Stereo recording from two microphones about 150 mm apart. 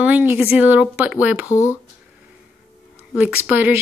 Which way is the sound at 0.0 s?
10° right (ahead or behind).